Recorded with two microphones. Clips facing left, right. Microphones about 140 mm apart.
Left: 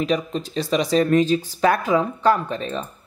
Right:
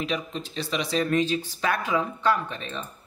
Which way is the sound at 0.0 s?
40° left (ahead or behind).